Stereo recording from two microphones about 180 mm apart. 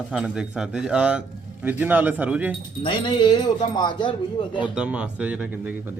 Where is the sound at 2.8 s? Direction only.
25° left (ahead or behind).